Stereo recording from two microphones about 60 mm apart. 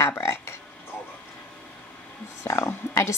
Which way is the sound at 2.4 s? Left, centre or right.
Left.